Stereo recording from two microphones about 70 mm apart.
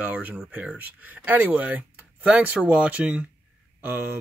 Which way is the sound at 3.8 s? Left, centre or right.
Right.